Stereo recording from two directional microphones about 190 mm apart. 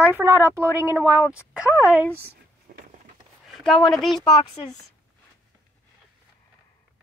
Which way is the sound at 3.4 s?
Centre (ahead or behind).